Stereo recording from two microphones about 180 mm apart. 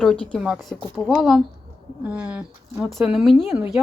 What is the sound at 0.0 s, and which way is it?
Speech, 5° left (ahead or behind).